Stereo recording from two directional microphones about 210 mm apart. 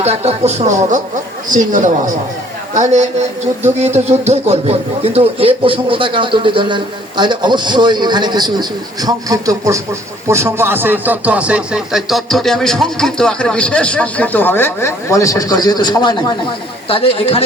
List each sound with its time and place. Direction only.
0.0 s speech: 30° right (ahead or behind); by 17.4 s 25° left (ahead or behind)